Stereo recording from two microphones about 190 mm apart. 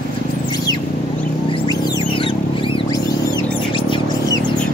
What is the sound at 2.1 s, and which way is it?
Rodents, 25° left (ahead or behind).